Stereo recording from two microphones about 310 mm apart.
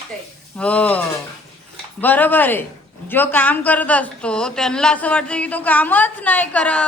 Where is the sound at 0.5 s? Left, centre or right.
Centre.